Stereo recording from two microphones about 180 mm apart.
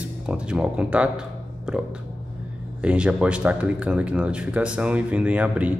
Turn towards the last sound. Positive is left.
turn(degrees=-10)  # may be behind; listen again after turning